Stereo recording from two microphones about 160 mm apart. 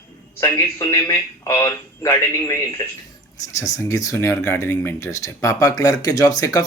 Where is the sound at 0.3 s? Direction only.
15° left (ahead or behind).